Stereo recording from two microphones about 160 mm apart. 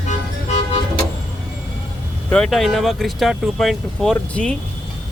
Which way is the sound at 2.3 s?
5° left (ahead or behind).